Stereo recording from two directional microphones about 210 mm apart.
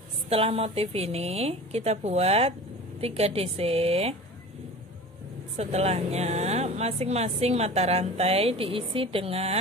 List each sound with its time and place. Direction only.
0.3 s speech: 30° right (ahead or behind)
5.6 s speech: 30° right (ahead or behind)